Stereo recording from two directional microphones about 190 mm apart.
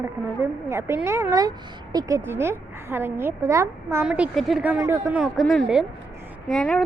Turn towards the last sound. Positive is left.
turn(degrees=5)  # may be behind; listen again after turning